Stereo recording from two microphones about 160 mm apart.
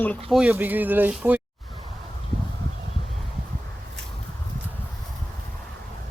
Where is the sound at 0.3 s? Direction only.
5° right (ahead or behind).